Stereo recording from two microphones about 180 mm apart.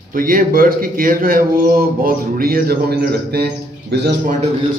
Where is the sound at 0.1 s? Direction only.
50° right (ahead or behind).